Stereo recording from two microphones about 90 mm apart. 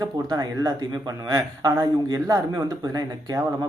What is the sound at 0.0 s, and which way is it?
Speech, 45° right (ahead or behind).